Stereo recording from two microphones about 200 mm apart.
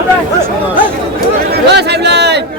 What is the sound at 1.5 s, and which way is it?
Chatter, 55° right (ahead or behind).